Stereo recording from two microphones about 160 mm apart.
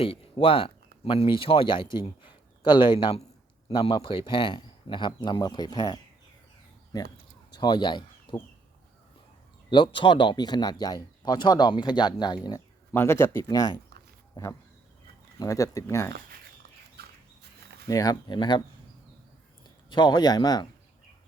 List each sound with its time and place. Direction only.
0.0 s speech: 35° left (ahead or behind)
9.6 s speech: 30° left (ahead or behind)
12.9 s speech: 15° left (ahead or behind)
15.4 s speech: 20° left (ahead or behind)
17.8 s speech: 20° left (ahead or behind)
19.6 s speech: 25° left (ahead or behind)